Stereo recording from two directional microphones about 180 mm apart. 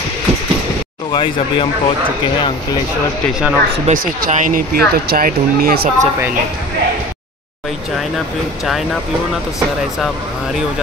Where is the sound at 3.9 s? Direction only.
50° right (ahead or behind).